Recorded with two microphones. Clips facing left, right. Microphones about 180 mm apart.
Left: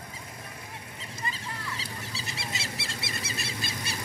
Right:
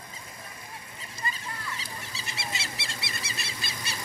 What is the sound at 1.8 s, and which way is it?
Bird, 35° left (ahead or behind).